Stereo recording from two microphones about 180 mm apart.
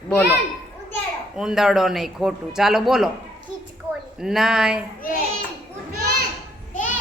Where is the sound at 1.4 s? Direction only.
5° right (ahead or behind).